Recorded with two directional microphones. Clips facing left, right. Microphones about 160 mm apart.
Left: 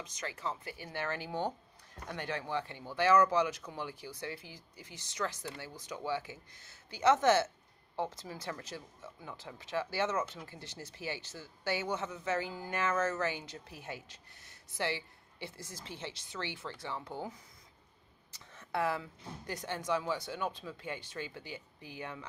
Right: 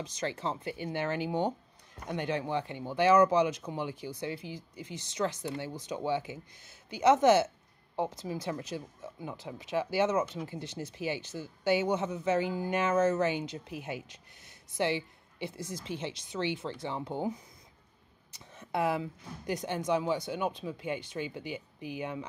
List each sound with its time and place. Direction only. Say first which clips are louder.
0.0 s speech: right 6 dB; 30° right (ahead or behind)